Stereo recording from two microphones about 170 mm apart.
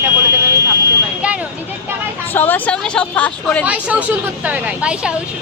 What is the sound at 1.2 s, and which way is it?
Speech, 10° right (ahead or behind).